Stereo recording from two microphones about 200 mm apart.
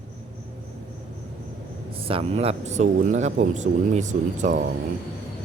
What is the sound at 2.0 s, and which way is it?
Speech, 30° right (ahead or behind).